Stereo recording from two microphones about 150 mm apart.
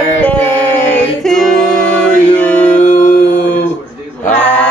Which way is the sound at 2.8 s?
60° left (ahead or behind).